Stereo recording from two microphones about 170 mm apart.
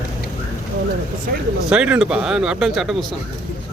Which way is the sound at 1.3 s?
60° right (ahead or behind).